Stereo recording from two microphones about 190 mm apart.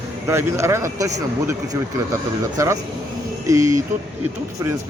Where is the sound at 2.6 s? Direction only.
15° right (ahead or behind).